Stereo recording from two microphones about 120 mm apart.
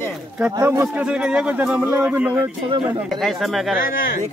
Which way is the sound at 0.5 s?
25° right (ahead or behind).